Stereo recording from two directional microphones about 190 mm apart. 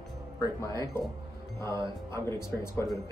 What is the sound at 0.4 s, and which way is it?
Speech, 15° left (ahead or behind).